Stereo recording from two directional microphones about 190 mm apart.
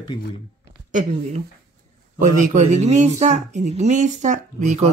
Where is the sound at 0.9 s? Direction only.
40° right (ahead or behind).